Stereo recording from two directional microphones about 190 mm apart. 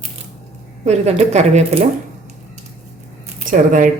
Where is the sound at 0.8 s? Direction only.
35° right (ahead or behind).